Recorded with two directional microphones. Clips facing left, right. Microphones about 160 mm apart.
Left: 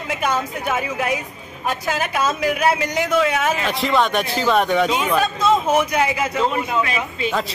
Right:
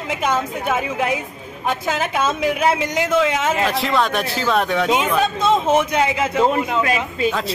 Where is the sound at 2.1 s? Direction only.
20° right (ahead or behind).